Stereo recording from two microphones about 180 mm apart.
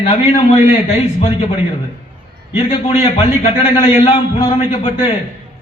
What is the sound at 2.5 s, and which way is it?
A man's voice, 35° left (ahead or behind).